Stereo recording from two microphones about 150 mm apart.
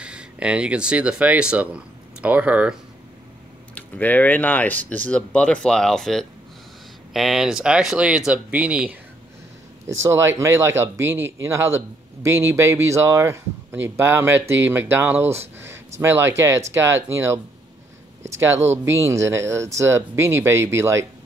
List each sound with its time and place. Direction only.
0.0 s speech: 5° right (ahead or behind)
3.7 s speech: 10° left (ahead or behind); by 8.9 s 10° right (ahead or behind)
9.8 s speech: 20° right (ahead or behind)